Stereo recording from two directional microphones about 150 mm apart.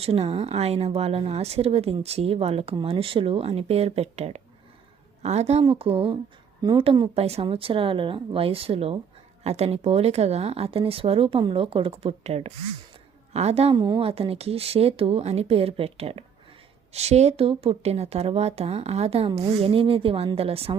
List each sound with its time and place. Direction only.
0.0 s speech: 40° right (ahead or behind)